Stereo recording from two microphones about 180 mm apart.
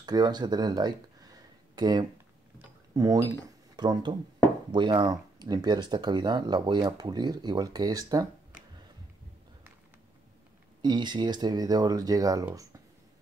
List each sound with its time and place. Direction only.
0.0 s speech: 20° right (ahead or behind)
10.8 s speech: 25° right (ahead or behind)